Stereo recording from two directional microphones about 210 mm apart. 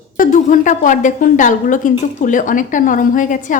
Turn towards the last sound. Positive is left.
turn(degrees=40)  # may be behind; listen again after turning